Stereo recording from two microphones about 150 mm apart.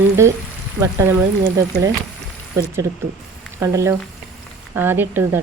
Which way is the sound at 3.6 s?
20° right (ahead or behind).